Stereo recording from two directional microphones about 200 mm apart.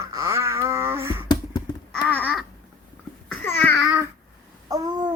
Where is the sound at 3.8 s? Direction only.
10° right (ahead or behind).